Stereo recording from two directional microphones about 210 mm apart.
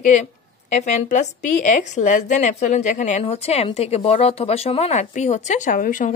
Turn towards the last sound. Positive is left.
turn(degrees=40)  # may be behind; listen again after turning